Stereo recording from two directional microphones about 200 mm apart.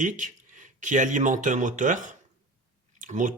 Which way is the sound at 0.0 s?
40° right (ahead or behind).